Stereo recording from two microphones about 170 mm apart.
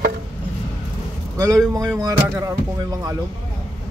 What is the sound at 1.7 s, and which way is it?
Speech, 20° right (ahead or behind).